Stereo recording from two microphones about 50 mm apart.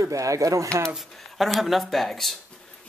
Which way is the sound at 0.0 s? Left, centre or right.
Right.